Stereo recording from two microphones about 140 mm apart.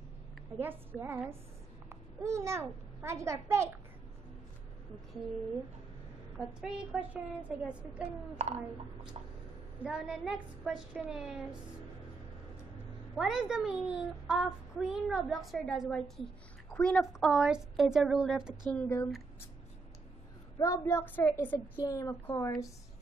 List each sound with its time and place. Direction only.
0.6 s a woman's voice: 15° right (ahead or behind)
6.3 s a woman's voice: 5° right (ahead or behind)
8.4 s speech: 50° right (ahead or behind)
9.8 s speech: 5° right (ahead or behind)
13.1 s speech: 5° right (ahead or behind)
18.7 s a woman's voice: 15° left (ahead or behind)
20.5 s a woman's voice: 25° left (ahead or behind)
21.8 s a woman's voice: 25° left (ahead or behind)